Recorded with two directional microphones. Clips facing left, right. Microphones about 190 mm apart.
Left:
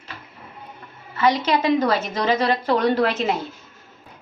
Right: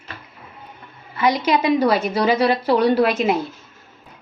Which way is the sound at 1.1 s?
10° right (ahead or behind).